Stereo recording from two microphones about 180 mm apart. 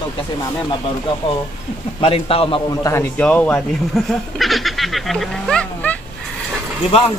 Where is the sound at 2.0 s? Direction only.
30° left (ahead or behind).